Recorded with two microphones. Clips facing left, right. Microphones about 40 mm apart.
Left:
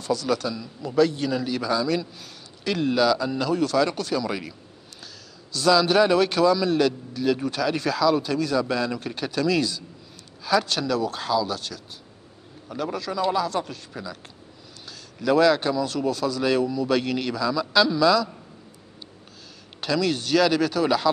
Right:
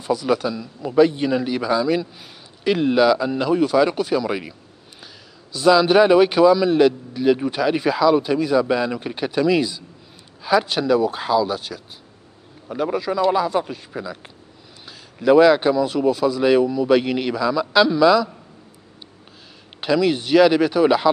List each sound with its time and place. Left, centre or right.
0.0 s a man's voice: centre
19.8 s a man's voice: centre